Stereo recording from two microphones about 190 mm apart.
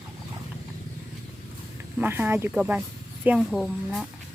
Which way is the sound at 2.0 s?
10° right (ahead or behind).